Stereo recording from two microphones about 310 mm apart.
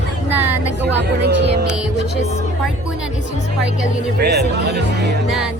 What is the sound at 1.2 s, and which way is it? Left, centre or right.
Speech, right.